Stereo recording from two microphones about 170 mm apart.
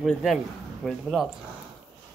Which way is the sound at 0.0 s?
Centre (ahead or behind).